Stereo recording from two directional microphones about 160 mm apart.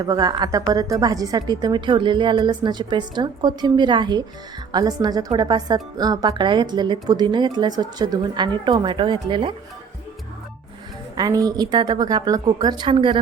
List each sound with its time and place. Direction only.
0.0 s speech: 25° right (ahead or behind)
11.1 s speech: 25° right (ahead or behind)